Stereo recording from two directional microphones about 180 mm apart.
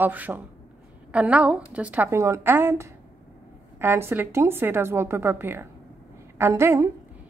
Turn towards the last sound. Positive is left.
turn(degrees=-15)  # may be behind; listen again after turning